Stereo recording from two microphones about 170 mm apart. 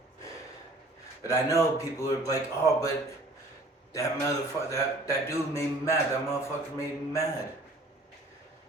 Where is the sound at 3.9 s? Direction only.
20° left (ahead or behind).